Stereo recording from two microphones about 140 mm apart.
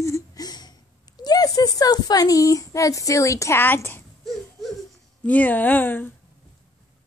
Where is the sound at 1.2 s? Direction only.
30° left (ahead or behind).